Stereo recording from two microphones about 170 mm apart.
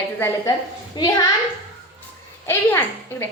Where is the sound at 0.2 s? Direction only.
15° left (ahead or behind).